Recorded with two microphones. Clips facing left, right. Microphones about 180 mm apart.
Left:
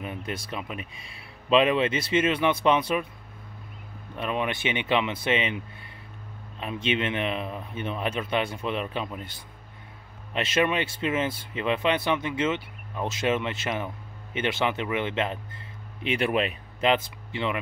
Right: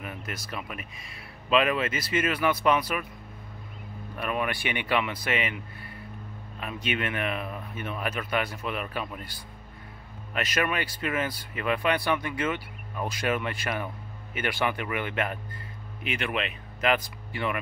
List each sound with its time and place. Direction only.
0.0 s speech: 30° left (ahead or behind)
4.2 s speech: 25° left (ahead or behind)
6.6 s speech: 25° left (ahead or behind)
10.3 s speech: 25° left (ahead or behind)